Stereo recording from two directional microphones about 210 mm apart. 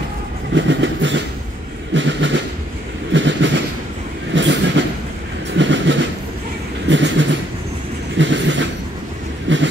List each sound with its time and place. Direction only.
0.6 s train: 60° right (ahead or behind)
2.0 s a sound: 60° right (ahead or behind)
3.1 s train: 60° right (ahead or behind)
6.9 s vehicle: 60° right (ahead or behind)
8.2 s train: 60° right (ahead or behind)
9.5 s a sound: 60° right (ahead or behind)